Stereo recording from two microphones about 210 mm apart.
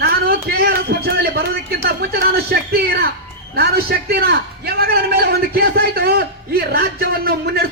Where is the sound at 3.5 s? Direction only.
50° right (ahead or behind).